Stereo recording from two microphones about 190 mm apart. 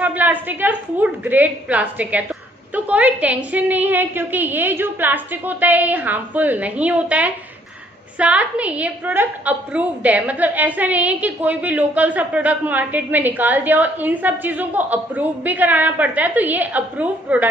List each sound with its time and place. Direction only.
0.0 s a woman's voice: 10° right (ahead or behind)